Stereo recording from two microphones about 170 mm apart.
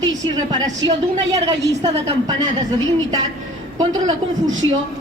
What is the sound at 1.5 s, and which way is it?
A woman's voice, 25° right (ahead or behind).